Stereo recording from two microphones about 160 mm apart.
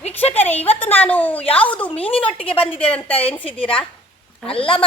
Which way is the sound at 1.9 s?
35° left (ahead or behind).